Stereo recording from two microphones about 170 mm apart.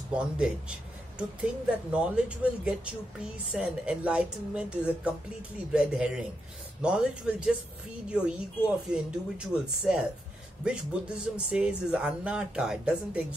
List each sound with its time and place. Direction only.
0.1 s speech: 5° right (ahead or behind)